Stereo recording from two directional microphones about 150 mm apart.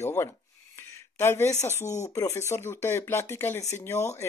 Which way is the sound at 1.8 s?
50° left (ahead or behind).